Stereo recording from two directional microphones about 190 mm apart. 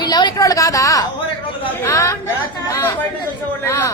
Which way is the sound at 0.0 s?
20° left (ahead or behind).